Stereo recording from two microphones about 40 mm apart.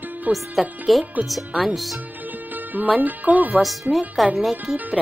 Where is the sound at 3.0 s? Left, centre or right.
Right.